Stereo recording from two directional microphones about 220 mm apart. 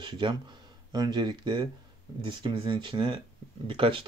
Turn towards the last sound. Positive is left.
turn(degrees=-25)  # may be behind; listen again after turning